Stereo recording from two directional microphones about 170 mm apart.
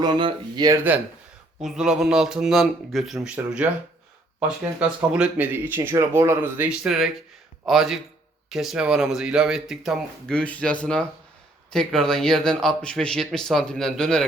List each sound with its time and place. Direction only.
0.0 s speech: 25° right (ahead or behind)
1.6 s speech: 5° right (ahead or behind)